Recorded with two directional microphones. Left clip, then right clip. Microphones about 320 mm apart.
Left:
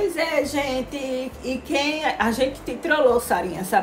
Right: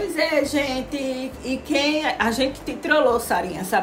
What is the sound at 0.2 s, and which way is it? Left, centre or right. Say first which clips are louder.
A woman's voice: right 2 dB; centre.